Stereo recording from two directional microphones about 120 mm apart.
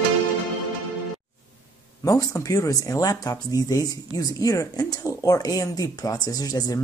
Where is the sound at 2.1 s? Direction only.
30° left (ahead or behind).